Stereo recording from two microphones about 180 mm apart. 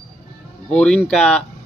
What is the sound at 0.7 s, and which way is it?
Speech, 5° left (ahead or behind).